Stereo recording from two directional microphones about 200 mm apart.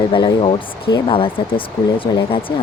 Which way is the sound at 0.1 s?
25° left (ahead or behind).